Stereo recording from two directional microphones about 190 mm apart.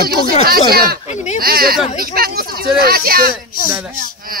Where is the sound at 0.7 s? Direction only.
50° right (ahead or behind).